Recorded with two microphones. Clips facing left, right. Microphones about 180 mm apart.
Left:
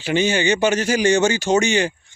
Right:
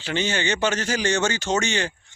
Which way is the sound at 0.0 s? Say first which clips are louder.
Left 6 dB; 10° left (ahead or behind).